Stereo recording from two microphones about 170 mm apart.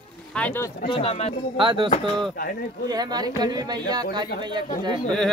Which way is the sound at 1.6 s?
30° right (ahead or behind).